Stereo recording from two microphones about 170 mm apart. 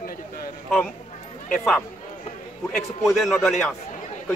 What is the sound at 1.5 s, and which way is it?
Speech, 5° left (ahead or behind).